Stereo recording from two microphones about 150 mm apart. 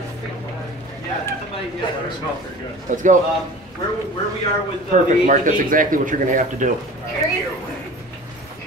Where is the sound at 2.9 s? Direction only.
60° right (ahead or behind).